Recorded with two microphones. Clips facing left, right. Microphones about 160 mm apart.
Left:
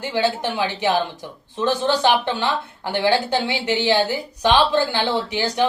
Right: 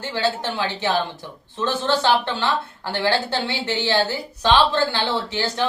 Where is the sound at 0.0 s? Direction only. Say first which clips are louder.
Left 2 dB; 15° left (ahead or behind).